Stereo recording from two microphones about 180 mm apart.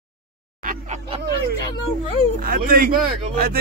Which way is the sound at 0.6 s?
40° right (ahead or behind).